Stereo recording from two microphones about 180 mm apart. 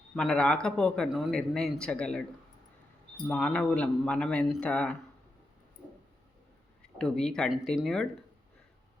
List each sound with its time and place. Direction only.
0.2 s a man's voice: 5° left (ahead or behind)
3.2 s a man's voice: 5° left (ahead or behind)
7.0 s a man's voice: 5° left (ahead or behind)